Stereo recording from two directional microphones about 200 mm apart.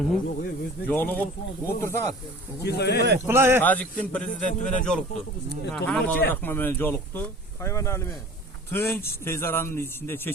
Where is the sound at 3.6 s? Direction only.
10° left (ahead or behind).